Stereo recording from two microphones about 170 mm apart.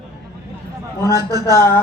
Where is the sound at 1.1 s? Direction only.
20° right (ahead or behind).